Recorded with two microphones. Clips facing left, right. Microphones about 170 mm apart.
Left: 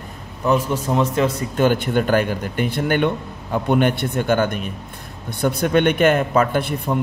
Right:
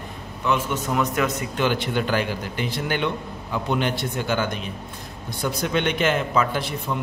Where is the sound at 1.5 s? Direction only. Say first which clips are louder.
Left 7 dB; 50° left (ahead or behind).